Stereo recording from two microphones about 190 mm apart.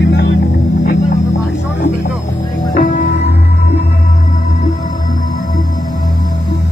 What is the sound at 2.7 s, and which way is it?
Music, 50° left (ahead or behind).